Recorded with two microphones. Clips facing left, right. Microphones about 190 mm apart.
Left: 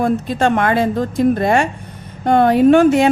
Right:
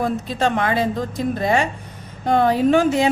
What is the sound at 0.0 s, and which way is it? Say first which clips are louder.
A woman's voice: left 5 dB; 55° left (ahead or behind).